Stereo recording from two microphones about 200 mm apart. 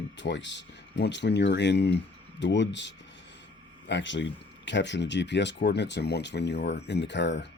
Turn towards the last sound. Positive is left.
turn(degrees=60)  # may be behind; listen again after turning